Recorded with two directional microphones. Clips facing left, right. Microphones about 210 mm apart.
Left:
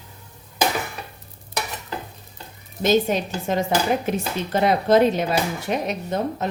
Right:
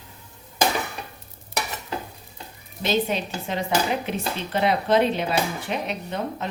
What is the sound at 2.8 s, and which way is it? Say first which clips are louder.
Speech: left 5 dB; 45° left (ahead or behind).